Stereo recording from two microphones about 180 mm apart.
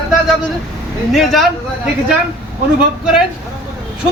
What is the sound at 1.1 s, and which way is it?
Speech, centre (ahead or behind).